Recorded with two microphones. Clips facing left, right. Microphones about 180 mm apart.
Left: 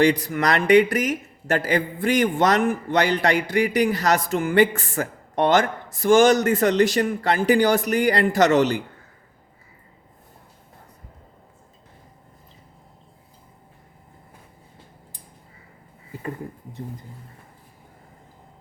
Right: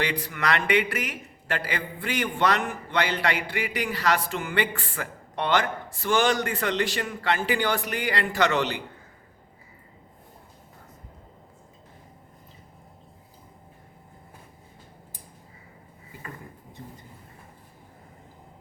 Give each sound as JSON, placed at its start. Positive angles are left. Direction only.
{"t": 0.0, "sound": "speech", "side_deg": 40}